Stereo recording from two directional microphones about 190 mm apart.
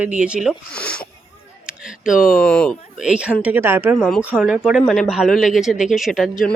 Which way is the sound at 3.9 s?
Centre (ahead or behind).